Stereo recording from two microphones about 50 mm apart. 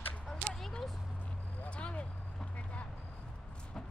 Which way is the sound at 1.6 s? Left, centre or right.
Left.